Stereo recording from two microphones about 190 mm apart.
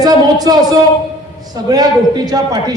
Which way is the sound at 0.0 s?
20° right (ahead or behind).